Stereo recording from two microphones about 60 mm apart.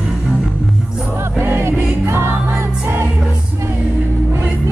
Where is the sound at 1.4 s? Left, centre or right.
Right.